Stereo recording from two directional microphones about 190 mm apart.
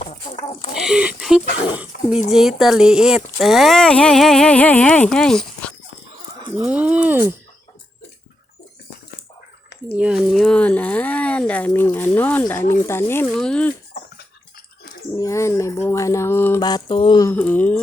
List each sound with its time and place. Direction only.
0.0 s chicken: 30° left (ahead or behind)
0.7 s speech: 5° right (ahead or behind)
1.9 s a sound: 50° left (ahead or behind)
2.3 s speech: centre (ahead or behind)
6.7 s speech: 5° right (ahead or behind)
10.0 s speech: 5° right (ahead or behind)
15.2 s speech: 15° left (ahead or behind)
17.2 s speech: 10° left (ahead or behind)